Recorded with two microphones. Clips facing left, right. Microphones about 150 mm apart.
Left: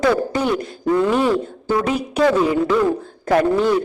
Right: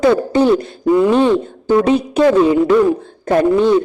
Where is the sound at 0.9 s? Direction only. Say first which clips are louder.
Right 5 dB; 15° right (ahead or behind).